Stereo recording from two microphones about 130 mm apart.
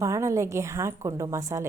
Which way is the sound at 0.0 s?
25° right (ahead or behind).